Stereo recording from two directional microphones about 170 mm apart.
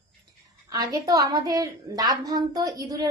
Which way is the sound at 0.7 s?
20° right (ahead or behind).